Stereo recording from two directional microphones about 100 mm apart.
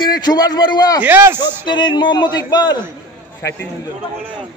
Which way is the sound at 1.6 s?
50° left (ahead or behind).